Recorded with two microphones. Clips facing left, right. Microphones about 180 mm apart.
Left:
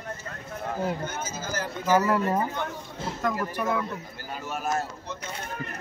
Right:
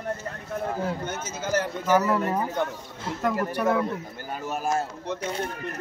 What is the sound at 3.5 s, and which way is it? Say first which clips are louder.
Speech: right 4 dB; 35° right (ahead or behind).